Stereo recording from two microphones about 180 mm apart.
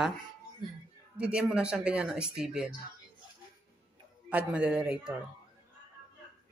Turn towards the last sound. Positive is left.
turn(degrees=-5)  # may be behind; listen again after turning